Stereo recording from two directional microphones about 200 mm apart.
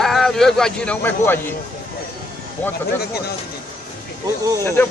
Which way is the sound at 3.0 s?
50° left (ahead or behind).